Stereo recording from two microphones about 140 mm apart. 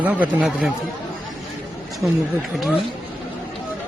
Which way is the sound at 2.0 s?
15° right (ahead or behind).